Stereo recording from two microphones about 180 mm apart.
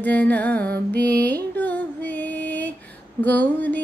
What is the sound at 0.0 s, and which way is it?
Music, 10° left (ahead or behind).